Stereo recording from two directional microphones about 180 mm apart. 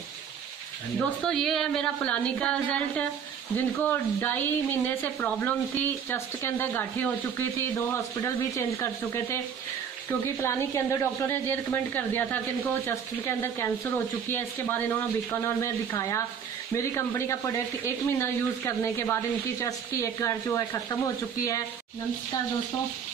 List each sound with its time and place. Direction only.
0.9 s a woman's voice: 5° left (ahead or behind)